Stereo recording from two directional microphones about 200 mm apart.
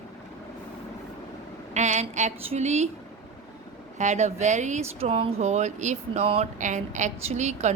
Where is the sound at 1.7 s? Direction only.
35° right (ahead or behind).